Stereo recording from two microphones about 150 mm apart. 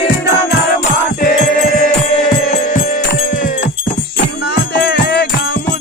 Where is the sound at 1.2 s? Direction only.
65° left (ahead or behind).